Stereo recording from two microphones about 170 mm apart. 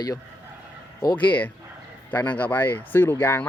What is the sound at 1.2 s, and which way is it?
Speech, 10° left (ahead or behind).